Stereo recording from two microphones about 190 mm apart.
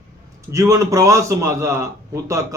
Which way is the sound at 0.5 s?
15° right (ahead or behind).